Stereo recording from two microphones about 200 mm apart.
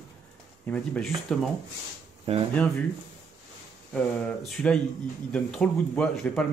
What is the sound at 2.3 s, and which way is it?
Speech, 30° right (ahead or behind).